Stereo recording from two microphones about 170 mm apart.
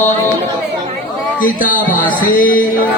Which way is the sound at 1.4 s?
55° left (ahead or behind).